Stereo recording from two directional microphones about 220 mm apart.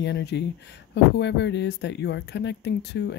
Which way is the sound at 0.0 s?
50° left (ahead or behind).